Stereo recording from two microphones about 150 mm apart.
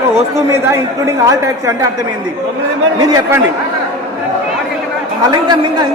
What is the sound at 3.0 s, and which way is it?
Speech, 25° right (ahead or behind).